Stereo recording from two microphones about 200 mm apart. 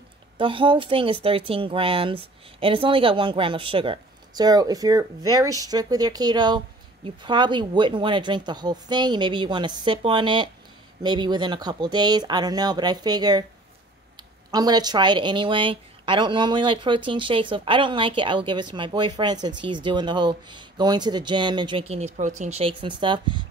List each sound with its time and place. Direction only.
0.4 s speech: 25° right (ahead or behind)
14.5 s speech: 20° right (ahead or behind)